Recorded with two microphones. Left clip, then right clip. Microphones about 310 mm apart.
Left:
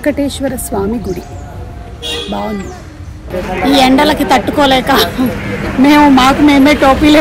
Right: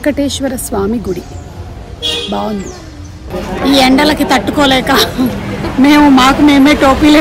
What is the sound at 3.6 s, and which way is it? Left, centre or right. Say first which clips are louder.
A woman's voice: even; centre.